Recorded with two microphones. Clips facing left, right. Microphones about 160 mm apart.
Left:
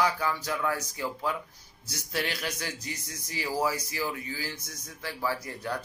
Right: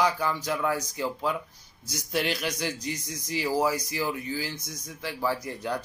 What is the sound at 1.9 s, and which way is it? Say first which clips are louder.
Speech: right 4 dB; 15° right (ahead or behind).